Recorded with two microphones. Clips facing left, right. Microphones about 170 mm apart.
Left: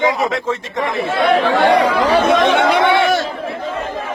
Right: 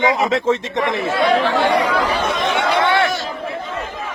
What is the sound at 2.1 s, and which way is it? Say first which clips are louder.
Speech: left 7 dB; 80° left.